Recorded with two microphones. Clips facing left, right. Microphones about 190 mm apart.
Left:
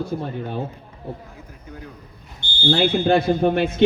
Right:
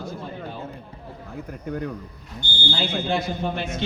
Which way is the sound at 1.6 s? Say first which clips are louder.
Right 10 dB; 60° right (ahead or behind).